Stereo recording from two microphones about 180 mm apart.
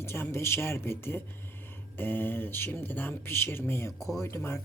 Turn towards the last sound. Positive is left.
turn(degrees=15)  # may be behind; listen again after turning